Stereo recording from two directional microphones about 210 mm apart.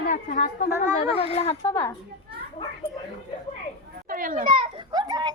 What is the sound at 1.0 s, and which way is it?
Speech, 30° left (ahead or behind).